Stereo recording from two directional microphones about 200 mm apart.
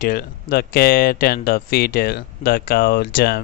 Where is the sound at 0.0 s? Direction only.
45° left (ahead or behind).